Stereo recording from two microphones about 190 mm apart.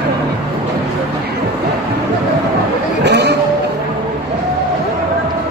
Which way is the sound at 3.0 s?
65° right (ahead or behind).